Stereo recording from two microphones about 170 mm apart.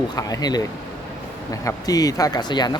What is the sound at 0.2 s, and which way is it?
Speech, 20° left (ahead or behind).